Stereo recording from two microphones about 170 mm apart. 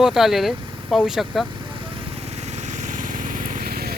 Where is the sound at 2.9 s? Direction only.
50° right (ahead or behind).